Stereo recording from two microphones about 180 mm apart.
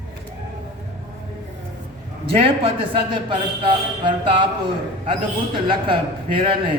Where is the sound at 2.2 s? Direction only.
30° right (ahead or behind).